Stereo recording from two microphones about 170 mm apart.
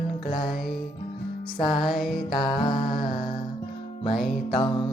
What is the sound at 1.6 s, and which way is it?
Music, 30° left (ahead or behind).